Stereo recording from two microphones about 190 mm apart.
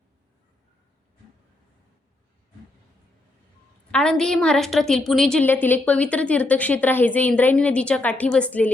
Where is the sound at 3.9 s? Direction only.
5° left (ahead or behind).